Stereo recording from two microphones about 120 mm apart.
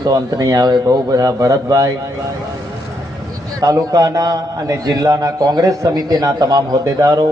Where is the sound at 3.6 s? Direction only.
30° right (ahead or behind).